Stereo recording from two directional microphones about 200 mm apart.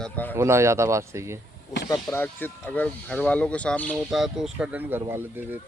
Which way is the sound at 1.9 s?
10° left (ahead or behind).